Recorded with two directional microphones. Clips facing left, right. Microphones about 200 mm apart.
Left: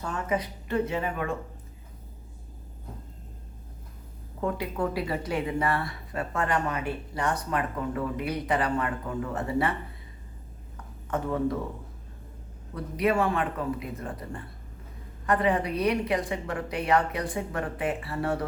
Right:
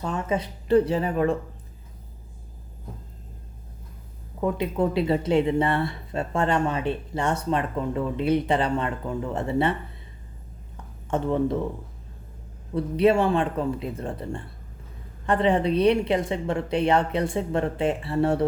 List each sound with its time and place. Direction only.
0.0 s speech: 25° right (ahead or behind)
4.4 s speech: 20° right (ahead or behind)
11.1 s speech: 25° right (ahead or behind)
12.7 s speech: 30° right (ahead or behind)